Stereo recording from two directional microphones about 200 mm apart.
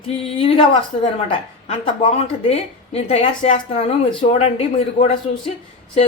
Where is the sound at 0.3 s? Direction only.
30° left (ahead or behind).